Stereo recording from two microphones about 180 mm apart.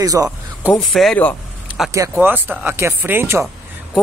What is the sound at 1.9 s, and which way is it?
Speech, 15° right (ahead or behind).